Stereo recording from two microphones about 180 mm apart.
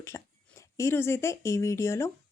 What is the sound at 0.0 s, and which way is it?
Speech, 15° left (ahead or behind).